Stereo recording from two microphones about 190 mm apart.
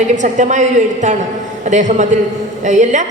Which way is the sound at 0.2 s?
40° right (ahead or behind).